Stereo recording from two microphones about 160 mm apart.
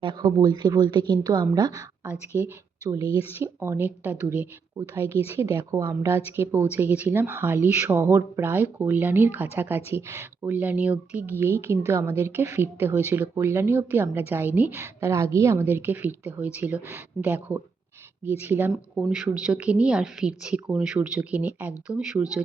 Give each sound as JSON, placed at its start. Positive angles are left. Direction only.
{"t": 0.0, "sound": "speech", "side_deg": -30}
{"t": 3.1, "sound": "speech", "side_deg": 35}
{"t": 3.4, "sound": "speech", "side_deg": -15}